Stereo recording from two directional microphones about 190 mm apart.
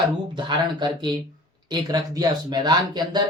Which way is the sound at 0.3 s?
25° right (ahead or behind).